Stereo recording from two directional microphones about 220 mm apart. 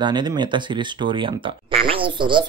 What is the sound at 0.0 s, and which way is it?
Speech, 20° right (ahead or behind).